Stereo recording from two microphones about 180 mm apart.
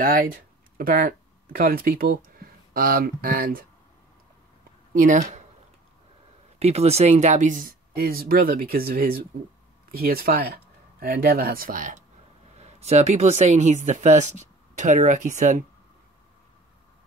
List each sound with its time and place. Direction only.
0.0 s speech: 50° right (ahead or behind)
4.9 s speech: 45° right (ahead or behind)
6.6 s speech: 35° right (ahead or behind)